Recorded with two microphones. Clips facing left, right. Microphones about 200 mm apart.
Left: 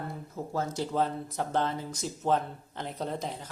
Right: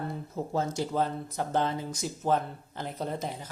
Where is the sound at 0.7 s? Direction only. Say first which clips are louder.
Right 1 dB; 10° right (ahead or behind).